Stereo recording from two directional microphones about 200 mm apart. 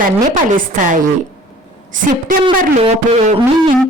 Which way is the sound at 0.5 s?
40° right (ahead or behind).